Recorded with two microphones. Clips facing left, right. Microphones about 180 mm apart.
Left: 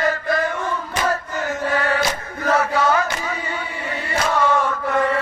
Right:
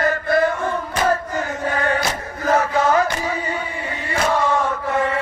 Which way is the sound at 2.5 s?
35° right (ahead or behind).